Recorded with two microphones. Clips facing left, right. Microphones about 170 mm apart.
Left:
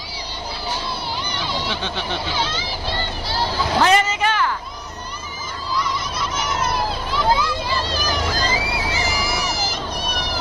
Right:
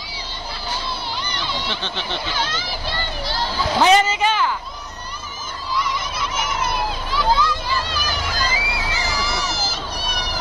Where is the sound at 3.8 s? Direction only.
25° right (ahead or behind).